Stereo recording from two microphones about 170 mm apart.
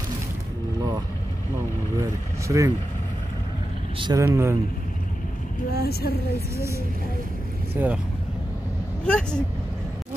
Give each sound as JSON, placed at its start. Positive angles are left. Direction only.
{"t": 2.0, "sound": "speech", "side_deg": -20}
{"t": 4.0, "sound": "speech", "side_deg": -20}
{"t": 5.7, "sound": "a woman's voice", "side_deg": 65}
{"t": 7.7, "sound": "speech", "side_deg": -10}
{"t": 9.0, "sound": "speech", "side_deg": 5}